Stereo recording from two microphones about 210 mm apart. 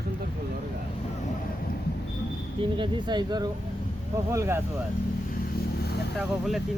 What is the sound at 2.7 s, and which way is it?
Speech, 20° right (ahead or behind).